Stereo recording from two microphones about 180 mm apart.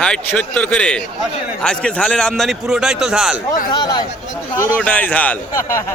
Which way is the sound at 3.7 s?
25° left (ahead or behind).